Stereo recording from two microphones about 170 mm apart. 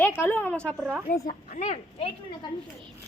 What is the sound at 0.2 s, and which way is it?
Speech, 10° left (ahead or behind).